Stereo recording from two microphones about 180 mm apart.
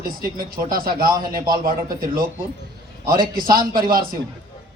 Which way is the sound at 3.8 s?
55° right (ahead or behind).